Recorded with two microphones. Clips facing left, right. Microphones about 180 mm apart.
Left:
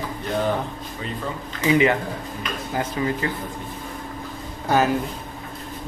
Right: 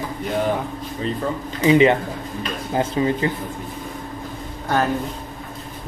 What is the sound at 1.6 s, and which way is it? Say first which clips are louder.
Speech: right 4 dB; 25° right (ahead or behind).